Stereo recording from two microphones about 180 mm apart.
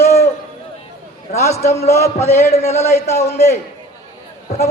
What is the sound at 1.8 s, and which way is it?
Speech, 15° left (ahead or behind).